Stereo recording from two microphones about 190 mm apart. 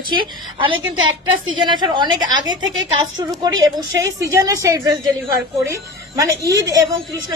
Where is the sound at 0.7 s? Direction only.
90° right.